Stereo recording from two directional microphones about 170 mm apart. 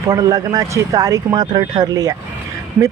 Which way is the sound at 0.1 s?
20° right (ahead or behind).